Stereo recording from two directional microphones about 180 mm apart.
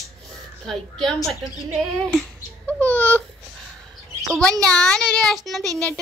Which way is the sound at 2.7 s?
10° left (ahead or behind).